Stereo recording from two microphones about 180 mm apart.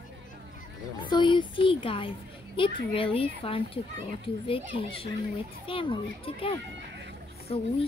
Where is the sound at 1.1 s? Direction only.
25° left (ahead or behind).